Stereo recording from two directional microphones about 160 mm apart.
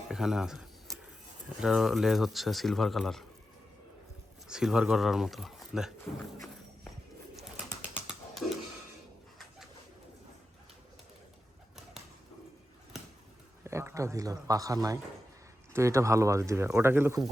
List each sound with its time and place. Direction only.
0.1 s speech: 5° right (ahead or behind)
4.4 s speech: 5° right (ahead or behind)
13.7 s speech: 15° right (ahead or behind)